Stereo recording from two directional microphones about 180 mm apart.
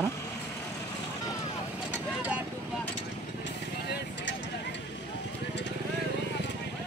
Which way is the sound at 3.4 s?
80° left.